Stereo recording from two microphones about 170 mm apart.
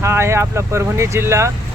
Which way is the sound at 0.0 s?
15° right (ahead or behind).